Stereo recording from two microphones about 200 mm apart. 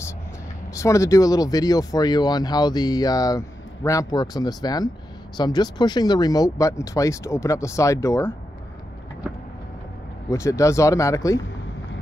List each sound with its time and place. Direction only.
0.7 s speech: 15° left (ahead or behind)
10.3 s speech: 15° left (ahead or behind)